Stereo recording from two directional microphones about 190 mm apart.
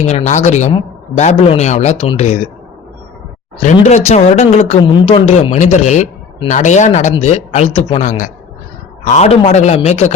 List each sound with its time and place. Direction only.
0.0 s a woman's voice: 35° left (ahead or behind)
3.8 s a woman's voice: 35° left (ahead or behind)
4.8 s a woman's voice: 25° left (ahead or behind)